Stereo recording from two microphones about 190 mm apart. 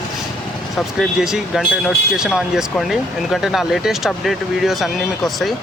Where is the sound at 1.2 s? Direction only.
5° right (ahead or behind).